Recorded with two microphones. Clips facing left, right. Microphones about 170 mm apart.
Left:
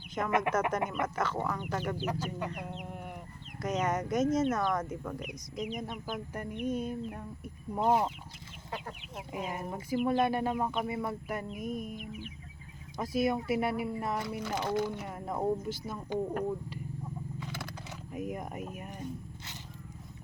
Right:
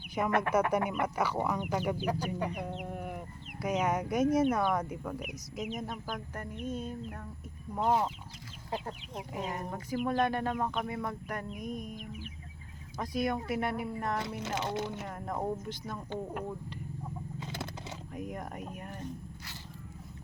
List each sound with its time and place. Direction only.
0.3 s speech: 10° left (ahead or behind)
0.7 s speech: 10° right (ahead or behind)
2.7 s chicken: 45° right (ahead or behind)
3.6 s speech: 10° right (ahead or behind); by 8.1 s 10° left (ahead or behind)
9.3 s speech: 10° left (ahead or behind)
13.0 s speech: 5° left (ahead or behind)
14.2 s speech: 20° right (ahead or behind)
15.0 s speech: 5° left (ahead or behind)
17.4 s a sound: 25° right (ahead or behind)
18.1 s speech: 10° left (ahead or behind)